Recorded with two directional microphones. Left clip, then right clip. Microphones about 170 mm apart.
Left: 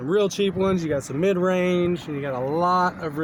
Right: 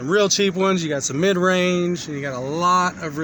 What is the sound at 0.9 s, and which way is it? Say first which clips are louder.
Speech: right 2 dB; 35° right (ahead or behind).